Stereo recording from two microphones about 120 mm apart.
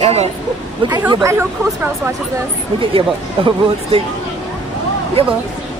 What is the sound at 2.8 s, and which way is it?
Speech, 45° right (ahead or behind).